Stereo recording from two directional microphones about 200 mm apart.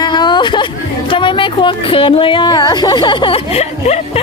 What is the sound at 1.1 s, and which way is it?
A woman's voice, 25° left (ahead or behind).